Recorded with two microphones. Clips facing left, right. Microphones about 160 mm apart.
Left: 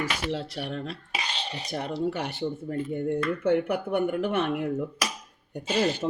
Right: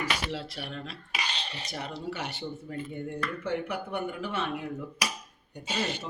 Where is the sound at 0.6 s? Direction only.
50° left (ahead or behind).